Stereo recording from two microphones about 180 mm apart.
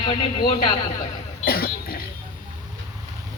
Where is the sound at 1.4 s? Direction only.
55° left (ahead or behind).